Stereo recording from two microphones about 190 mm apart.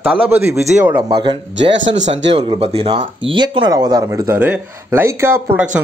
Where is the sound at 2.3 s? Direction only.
30° right (ahead or behind).